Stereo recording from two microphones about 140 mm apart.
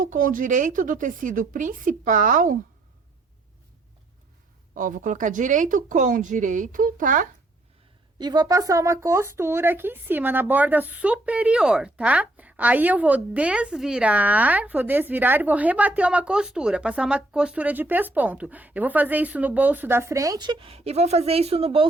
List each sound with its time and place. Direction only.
0.0 s a woman's voice: 75° right (ahead or behind)
4.7 s a woman's voice: 70° right (ahead or behind)
8.2 s speech: 30° right (ahead or behind)